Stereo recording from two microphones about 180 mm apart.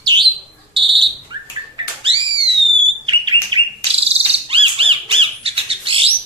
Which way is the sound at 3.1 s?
30° right (ahead or behind).